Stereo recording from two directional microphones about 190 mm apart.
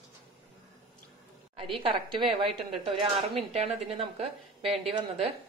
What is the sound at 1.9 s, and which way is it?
A woman's voice, 25° right (ahead or behind).